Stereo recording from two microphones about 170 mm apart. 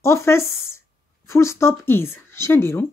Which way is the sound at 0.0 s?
15° left (ahead or behind).